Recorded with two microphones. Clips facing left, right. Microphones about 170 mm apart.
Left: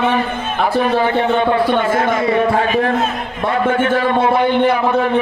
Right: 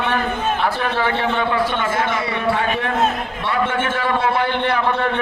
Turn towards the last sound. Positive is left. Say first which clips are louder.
# left 6 dB
turn(degrees=20)  # may be behind; listen again after turning